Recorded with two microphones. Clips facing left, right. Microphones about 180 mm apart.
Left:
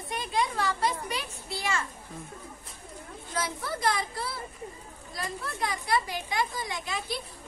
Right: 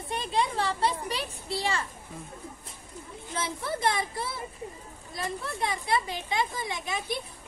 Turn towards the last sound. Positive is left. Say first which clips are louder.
# right 2 dB
turn(degrees=-20)  # may be behind; listen again after turning